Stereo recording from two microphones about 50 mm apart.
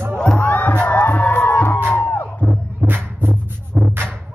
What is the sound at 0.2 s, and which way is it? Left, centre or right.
Music, centre.